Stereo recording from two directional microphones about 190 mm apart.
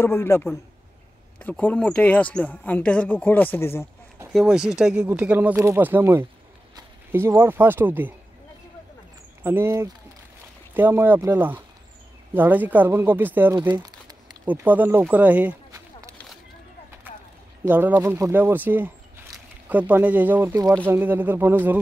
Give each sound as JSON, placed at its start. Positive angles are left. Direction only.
{"t": 0.0, "sound": "speech", "side_deg": 15}
{"t": 4.3, "sound": "speech", "side_deg": 0}
{"t": 9.4, "sound": "speech", "side_deg": -10}
{"t": 13.7, "sound": "crumpling", "side_deg": -20}
{"t": 14.4, "sound": "speech", "side_deg": -10}
{"t": 17.6, "sound": "speech", "side_deg": -10}